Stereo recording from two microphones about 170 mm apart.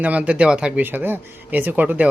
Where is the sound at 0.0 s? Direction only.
10° right (ahead or behind).